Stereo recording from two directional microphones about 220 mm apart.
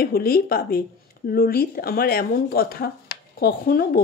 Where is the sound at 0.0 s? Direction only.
45° left (ahead or behind).